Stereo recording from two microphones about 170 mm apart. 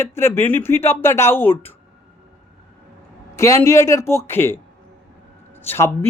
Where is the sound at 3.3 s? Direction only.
15° left (ahead or behind).